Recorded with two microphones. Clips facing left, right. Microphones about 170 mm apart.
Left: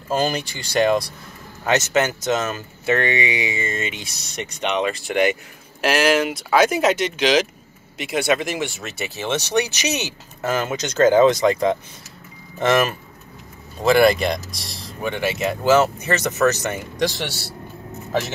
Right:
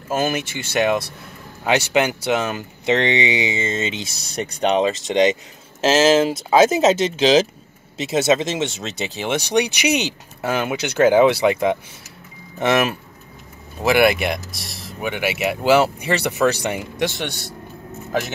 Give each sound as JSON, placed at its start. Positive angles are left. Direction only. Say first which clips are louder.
{"t": 0.1, "sound": "speech", "louder": "even", "side_deg": -5}
{"t": 4.4, "sound": "speech", "louder": "right 5 dB", "side_deg": -35}
{"t": 17.2, "sound": "speech", "louder": "right 1 dB", "side_deg": 5}